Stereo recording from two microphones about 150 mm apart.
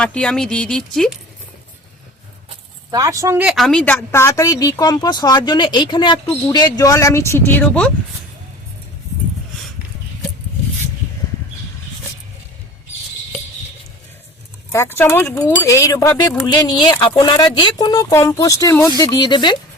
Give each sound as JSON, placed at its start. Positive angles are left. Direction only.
{"t": 0.0, "sound": "speech", "side_deg": 5}
{"t": 2.9, "sound": "speech", "side_deg": -20}
{"t": 3.4, "sound": "speech", "side_deg": 0}
{"t": 4.1, "sound": "speech", "side_deg": 20}
{"t": 14.7, "sound": "speech", "side_deg": 15}